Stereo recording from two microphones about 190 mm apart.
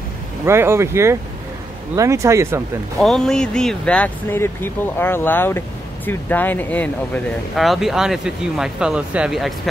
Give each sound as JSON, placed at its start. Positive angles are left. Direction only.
{"t": 0.5, "sound": "speech", "side_deg": -15}
{"t": 3.0, "sound": "speech", "side_deg": 0}